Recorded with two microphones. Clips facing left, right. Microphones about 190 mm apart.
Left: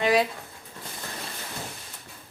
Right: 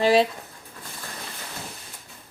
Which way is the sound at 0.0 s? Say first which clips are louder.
Right 4 dB; 30° right (ahead or behind).